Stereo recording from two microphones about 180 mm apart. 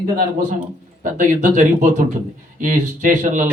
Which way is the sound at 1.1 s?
45° right (ahead or behind).